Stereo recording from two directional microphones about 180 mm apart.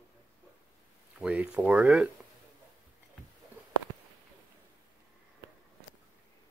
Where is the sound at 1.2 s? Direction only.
5° right (ahead or behind).